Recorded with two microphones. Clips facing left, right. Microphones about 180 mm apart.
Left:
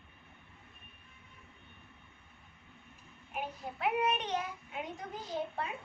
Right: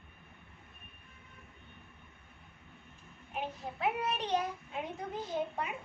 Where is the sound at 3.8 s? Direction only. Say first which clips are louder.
Left 2 dB; 30° right (ahead or behind).